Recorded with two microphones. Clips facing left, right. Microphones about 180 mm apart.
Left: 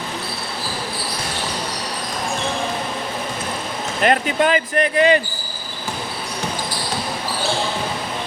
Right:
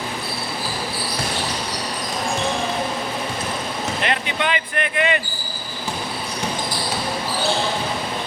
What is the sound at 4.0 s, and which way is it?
Speech, 45° left (ahead or behind).